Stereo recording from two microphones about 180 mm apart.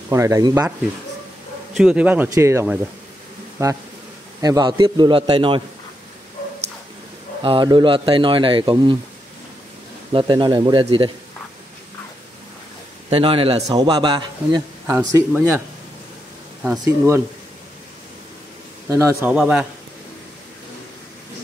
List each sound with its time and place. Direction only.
0.1 s a man's voice: 15° right (ahead or behind)
1.8 s a man's voice: 5° right (ahead or behind); by 5.6 s 30° right (ahead or behind)
7.4 s a man's voice: 25° right (ahead or behind)
10.1 s a man's voice: 25° right (ahead or behind)
13.1 s a man's voice: 30° right (ahead or behind)
14.9 s speech: 15° right (ahead or behind)
16.8 s speech: 15° right (ahead or behind)
18.9 s speech: 15° right (ahead or behind)
19.3 s a man's voice: 5° right (ahead or behind)